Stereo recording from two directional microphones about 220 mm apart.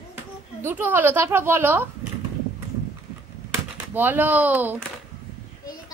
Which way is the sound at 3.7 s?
10° right (ahead or behind).